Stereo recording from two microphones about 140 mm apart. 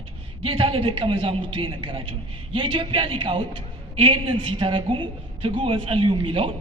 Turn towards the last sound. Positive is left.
turn(degrees=-40)  # may be behind; listen again after turning